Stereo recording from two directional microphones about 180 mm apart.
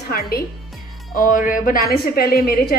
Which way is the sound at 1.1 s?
50° left (ahead or behind).